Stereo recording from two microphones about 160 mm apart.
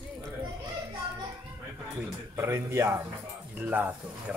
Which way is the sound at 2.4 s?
15° right (ahead or behind).